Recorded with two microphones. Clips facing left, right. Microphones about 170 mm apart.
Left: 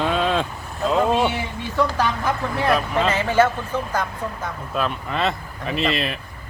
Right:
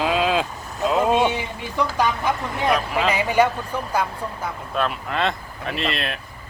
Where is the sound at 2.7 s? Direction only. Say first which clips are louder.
Left 2 dB; 5° right (ahead or behind).